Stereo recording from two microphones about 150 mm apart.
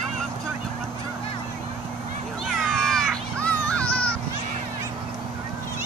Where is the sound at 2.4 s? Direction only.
Centre (ahead or behind).